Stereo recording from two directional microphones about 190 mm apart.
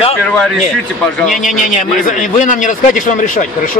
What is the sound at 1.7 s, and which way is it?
A man's voice, 40° left (ahead or behind).